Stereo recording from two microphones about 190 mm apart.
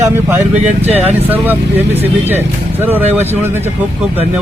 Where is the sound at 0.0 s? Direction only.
10° right (ahead or behind).